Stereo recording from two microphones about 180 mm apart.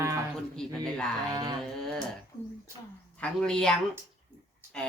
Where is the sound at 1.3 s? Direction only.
20° right (ahead or behind).